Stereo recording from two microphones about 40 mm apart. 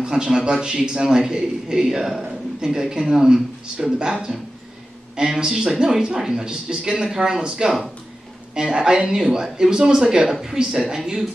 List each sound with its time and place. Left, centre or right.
0.0 s a man's voice: centre
5.4 s speech: centre